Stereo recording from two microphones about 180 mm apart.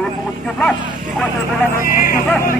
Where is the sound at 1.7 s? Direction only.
50° left (ahead or behind).